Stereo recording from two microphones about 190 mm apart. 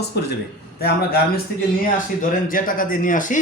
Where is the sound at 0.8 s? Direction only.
55° left (ahead or behind).